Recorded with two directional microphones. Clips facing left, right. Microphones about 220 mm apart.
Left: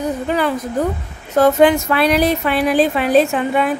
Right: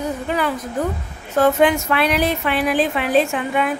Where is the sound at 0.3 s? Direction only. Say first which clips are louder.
Left 4 dB; 40° left (ahead or behind).